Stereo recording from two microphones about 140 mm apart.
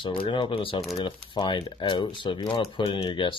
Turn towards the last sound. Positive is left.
turn(degrees=35)  # may be behind; listen again after turning